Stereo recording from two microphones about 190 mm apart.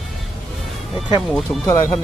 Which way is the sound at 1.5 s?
15° left (ahead or behind).